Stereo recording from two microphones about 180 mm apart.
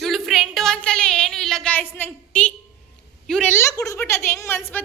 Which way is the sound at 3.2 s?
5° left (ahead or behind).